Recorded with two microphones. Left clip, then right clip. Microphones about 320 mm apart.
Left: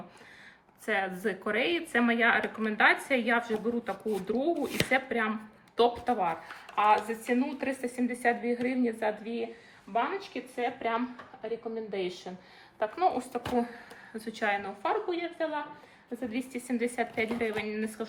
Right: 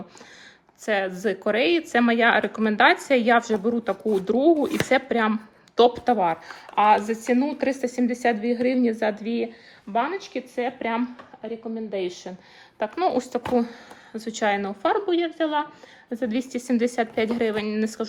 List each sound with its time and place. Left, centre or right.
0.9 s a woman's voice: centre